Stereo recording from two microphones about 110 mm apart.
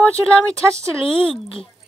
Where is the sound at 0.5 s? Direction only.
25° right (ahead or behind).